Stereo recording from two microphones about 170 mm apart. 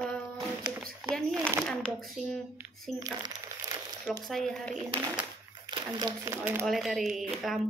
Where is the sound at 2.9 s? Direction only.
20° right (ahead or behind).